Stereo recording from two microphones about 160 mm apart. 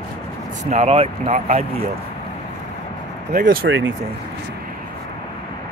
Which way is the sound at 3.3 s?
65° right (ahead or behind).